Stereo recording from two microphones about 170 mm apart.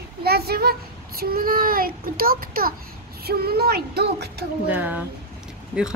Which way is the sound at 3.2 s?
65° right (ahead or behind).